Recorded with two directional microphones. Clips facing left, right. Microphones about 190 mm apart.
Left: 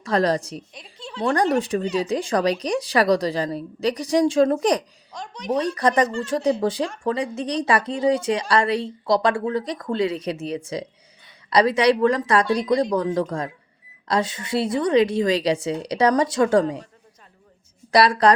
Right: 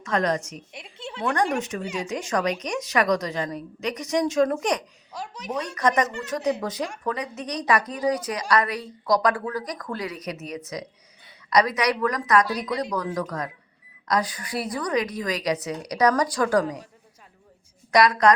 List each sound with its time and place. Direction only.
0.0 s a woman's voice: 35° left (ahead or behind)
0.7 s a sound: 25° right (ahead or behind)
1.2 s a woman's voice: 35° left (ahead or behind)
5.1 s speech: 5° right (ahead or behind)
5.5 s a woman's voice: 30° left (ahead or behind)
17.9 s a woman's voice: 30° left (ahead or behind)